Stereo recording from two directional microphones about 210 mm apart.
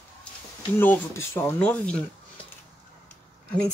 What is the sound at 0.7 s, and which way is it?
Speech, 10° left (ahead or behind).